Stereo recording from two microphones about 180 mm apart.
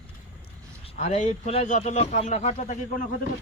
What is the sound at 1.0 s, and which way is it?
A man's voice, 40° left (ahead or behind).